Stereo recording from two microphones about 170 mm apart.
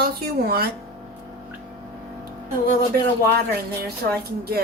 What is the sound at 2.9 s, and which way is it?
Speech, 65° right (ahead or behind).